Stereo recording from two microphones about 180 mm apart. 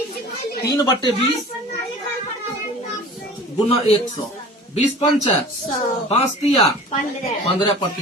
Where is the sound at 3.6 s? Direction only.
35° left (ahead or behind).